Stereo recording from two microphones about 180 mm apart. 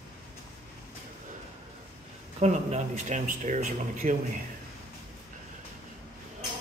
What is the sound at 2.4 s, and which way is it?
Speech, 40° right (ahead or behind).